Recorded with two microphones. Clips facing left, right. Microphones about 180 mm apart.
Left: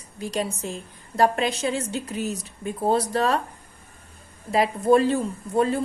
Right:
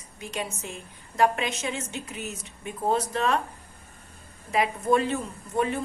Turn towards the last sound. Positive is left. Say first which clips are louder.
# left 5 dB
turn(degrees=35)  # may be behind; listen again after turning